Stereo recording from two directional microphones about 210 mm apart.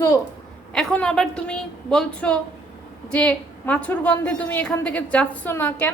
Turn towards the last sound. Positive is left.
turn(degrees=10)  # may be behind; listen again after turning